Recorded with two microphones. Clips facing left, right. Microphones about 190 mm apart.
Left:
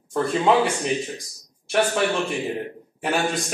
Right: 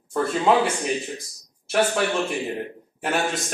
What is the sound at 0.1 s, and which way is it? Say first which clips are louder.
Speech: left 1 dB; centre (ahead or behind).